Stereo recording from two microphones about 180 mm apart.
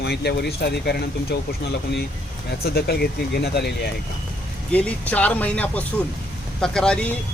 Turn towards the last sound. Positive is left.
turn(degrees=5)  # may be behind; listen again after turning